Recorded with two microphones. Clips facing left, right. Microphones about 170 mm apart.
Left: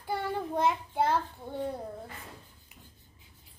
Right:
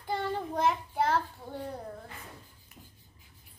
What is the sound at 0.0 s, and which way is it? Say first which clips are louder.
Child singing: even; 10° left (ahead or behind).